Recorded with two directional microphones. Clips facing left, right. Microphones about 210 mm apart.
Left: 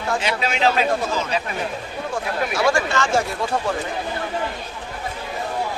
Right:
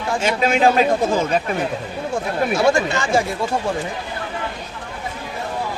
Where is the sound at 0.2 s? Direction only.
45° right (ahead or behind).